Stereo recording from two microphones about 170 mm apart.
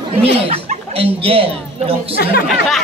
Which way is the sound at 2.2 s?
70° left (ahead or behind).